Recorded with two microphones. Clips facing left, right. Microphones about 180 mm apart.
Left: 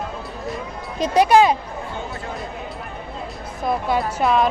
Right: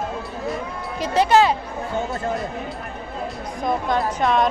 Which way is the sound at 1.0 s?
15° left (ahead or behind).